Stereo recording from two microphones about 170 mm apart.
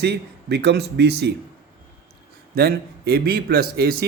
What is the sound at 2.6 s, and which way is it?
Speech, 70° right (ahead or behind).